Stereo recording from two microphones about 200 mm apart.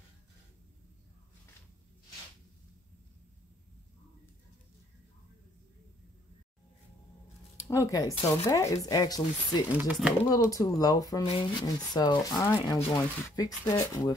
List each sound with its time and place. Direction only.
7.6 s speech: 15° left (ahead or behind)
9.7 s speech: 5° right (ahead or behind)
10.3 s speech: 15° left (ahead or behind)